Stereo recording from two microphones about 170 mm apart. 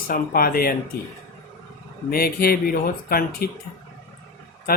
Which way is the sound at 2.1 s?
60° left (ahead or behind).